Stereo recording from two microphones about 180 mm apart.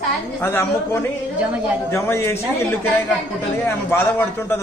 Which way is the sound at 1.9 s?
15° left (ahead or behind).